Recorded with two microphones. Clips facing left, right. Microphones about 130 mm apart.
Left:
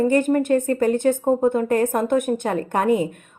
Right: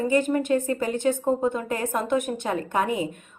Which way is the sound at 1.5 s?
50° left (ahead or behind).